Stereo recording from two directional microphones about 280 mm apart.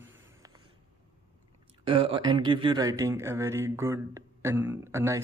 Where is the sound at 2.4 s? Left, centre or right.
Centre.